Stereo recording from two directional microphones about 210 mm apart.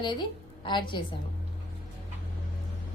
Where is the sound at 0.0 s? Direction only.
20° left (ahead or behind).